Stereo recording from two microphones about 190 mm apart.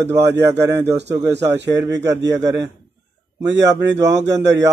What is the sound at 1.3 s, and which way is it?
Speech, 65° right (ahead or behind).